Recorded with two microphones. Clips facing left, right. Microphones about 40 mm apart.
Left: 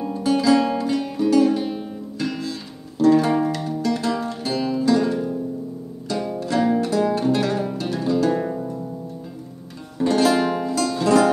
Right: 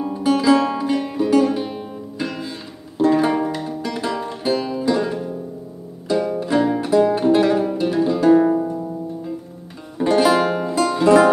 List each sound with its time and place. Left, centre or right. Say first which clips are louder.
0.0 s music: right 2 dB; centre
9.9 s music: right 3 dB; centre